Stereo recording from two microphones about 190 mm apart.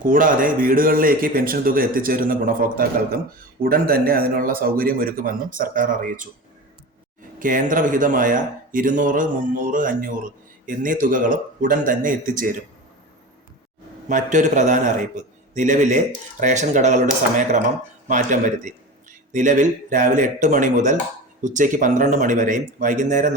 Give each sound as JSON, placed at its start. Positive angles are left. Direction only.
{"t": 0.0, "sound": "speech", "side_deg": -45}
{"t": 7.3, "sound": "speech", "side_deg": -45}
{"t": 14.1, "sound": "a man's voice", "side_deg": -40}